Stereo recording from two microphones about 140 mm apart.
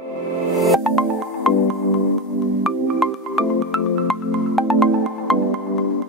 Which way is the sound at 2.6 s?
Centre (ahead or behind).